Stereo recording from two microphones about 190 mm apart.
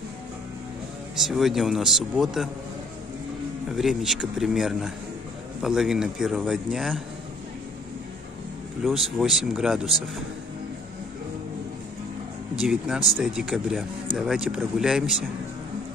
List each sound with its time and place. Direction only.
1.1 s a man's voice: centre (ahead or behind)
3.7 s a man's voice: centre (ahead or behind)
8.8 s a man's voice: centre (ahead or behind)
12.6 s a man's voice: centre (ahead or behind)